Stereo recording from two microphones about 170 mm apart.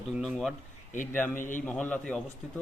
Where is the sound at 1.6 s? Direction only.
10° left (ahead or behind).